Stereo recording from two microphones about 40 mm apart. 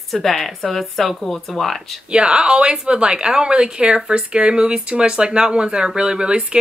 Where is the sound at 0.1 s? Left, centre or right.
Centre.